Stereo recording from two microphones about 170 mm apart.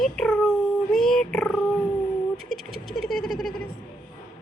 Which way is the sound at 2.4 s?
Centre (ahead or behind).